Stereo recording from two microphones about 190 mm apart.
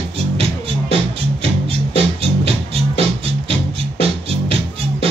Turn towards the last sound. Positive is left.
turn(degrees=-30)  # may be behind; listen again after turning